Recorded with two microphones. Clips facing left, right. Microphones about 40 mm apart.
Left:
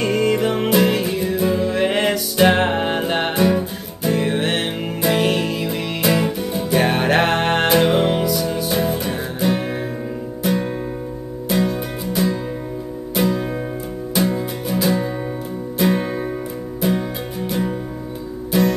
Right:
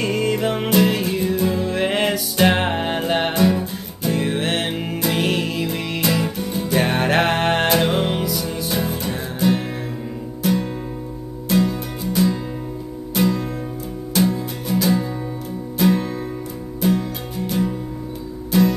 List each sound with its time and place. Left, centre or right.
0.0 s music: centre
14.7 s music: centre
18.5 s music: centre